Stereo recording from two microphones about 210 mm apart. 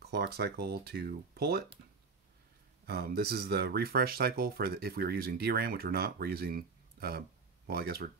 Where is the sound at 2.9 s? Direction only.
50° right (ahead or behind).